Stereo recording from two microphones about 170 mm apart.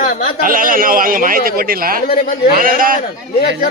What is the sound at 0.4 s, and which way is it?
A man's voice, 55° right (ahead or behind).